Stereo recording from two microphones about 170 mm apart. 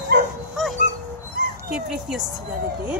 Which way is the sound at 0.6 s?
Centre (ahead or behind).